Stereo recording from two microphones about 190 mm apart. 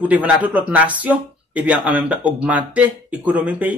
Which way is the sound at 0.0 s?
10° right (ahead or behind).